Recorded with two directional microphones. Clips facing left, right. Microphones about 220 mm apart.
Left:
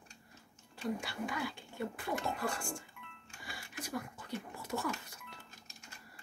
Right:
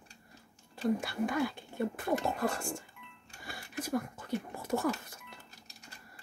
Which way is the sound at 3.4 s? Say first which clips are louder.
Right 6 dB; 45° right (ahead or behind).